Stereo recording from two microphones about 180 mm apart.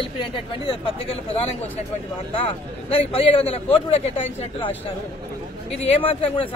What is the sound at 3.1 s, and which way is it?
Speech, 30° left (ahead or behind).